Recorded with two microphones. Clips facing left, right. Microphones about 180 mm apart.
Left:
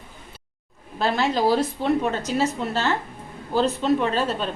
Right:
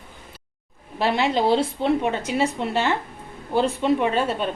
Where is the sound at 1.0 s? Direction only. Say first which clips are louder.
Right 1 dB; 20° right (ahead or behind).